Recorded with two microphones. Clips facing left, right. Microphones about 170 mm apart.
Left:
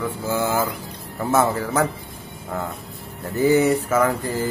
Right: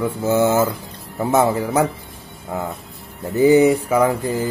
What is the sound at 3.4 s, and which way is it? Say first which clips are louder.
Speech: right 4 dB; 15° right (ahead or behind).